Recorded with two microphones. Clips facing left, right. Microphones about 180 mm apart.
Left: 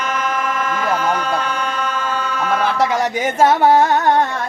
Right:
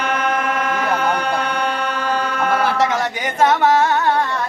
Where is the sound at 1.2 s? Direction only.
65° right (ahead or behind).